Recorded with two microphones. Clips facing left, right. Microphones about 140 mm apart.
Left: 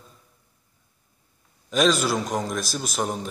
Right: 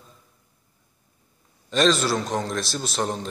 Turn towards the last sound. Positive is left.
turn(degrees=5)  # may be behind; listen again after turning